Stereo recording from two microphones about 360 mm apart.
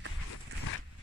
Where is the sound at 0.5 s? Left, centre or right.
Right.